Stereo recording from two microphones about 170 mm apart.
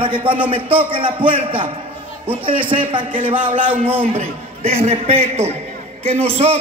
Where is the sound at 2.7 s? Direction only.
35° right (ahead or behind).